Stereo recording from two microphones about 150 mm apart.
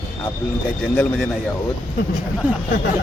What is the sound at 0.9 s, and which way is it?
Speech, 5° left (ahead or behind).